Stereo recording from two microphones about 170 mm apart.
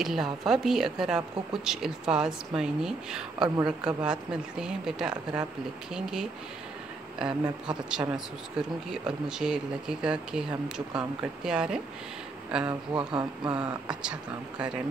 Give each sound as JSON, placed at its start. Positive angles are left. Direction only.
{"t": 0.0, "sound": "speech", "side_deg": 0}
{"t": 12.9, "sound": "a sound", "side_deg": -25}
{"t": 13.6, "sound": "speech", "side_deg": -5}